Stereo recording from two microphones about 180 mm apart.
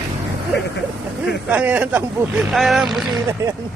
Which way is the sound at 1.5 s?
10° right (ahead or behind).